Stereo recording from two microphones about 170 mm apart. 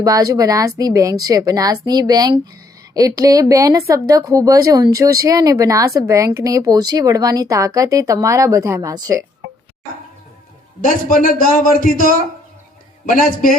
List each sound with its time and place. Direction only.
0.0 s speech: 20° right (ahead or behind)
10.8 s a man's voice: 55° left (ahead or behind)